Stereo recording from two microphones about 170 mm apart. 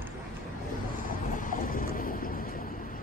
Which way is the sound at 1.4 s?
55° left (ahead or behind).